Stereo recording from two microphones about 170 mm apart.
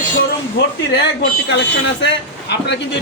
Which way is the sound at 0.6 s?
85° left.